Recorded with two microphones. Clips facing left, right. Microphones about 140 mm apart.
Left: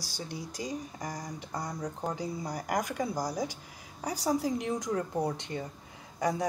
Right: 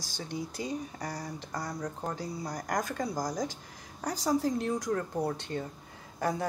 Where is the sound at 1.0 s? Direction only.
15° left (ahead or behind).